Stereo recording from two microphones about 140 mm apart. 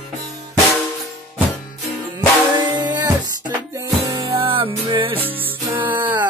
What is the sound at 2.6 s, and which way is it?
Music, 30° right (ahead or behind).